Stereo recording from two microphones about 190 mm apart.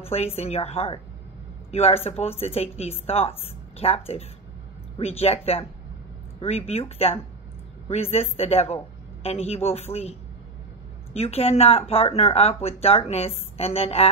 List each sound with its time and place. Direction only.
0.0 s speech: 30° left (ahead or behind)
11.1 s speech: 30° left (ahead or behind)